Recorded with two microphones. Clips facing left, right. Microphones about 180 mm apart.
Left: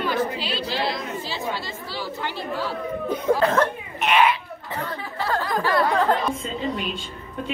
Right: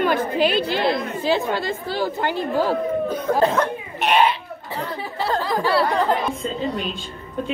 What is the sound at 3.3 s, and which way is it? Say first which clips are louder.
Speech: right 1 dB; 20° left (ahead or behind).